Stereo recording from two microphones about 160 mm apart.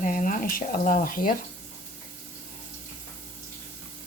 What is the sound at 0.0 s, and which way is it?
Speech, 55° left (ahead or behind).